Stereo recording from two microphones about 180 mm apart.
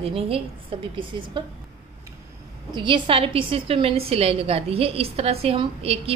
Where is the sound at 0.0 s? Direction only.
30° right (ahead or behind).